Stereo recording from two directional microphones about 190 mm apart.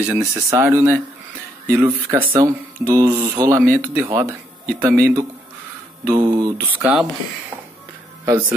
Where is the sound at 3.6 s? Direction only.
50° right (ahead or behind).